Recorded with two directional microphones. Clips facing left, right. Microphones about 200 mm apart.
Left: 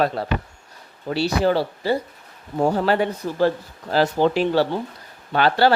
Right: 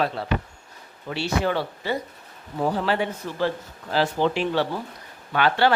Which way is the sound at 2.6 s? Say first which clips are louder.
Left 4 dB; 45° left (ahead or behind).